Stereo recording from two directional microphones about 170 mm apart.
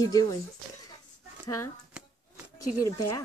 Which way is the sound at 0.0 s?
20° left (ahead or behind).